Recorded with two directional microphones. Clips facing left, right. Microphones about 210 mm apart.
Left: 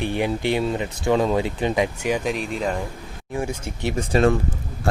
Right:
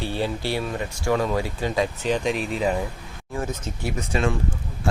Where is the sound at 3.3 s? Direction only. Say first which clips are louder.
Left 2 dB; 15° left (ahead or behind).